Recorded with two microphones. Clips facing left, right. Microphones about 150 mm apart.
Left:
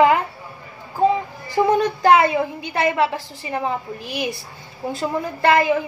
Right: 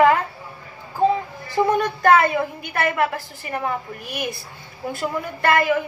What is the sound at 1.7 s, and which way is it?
A woman's voice, 15° left (ahead or behind).